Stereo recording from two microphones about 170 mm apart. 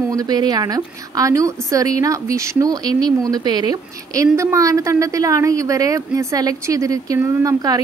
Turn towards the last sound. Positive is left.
turn(degrees=-20)  # may be behind; listen again after turning